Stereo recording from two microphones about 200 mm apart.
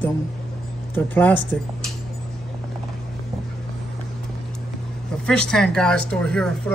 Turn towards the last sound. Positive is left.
turn(degrees=5)  # may be behind; listen again after turning